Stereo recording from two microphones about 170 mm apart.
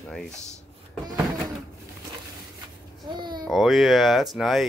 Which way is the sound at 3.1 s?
25° right (ahead or behind).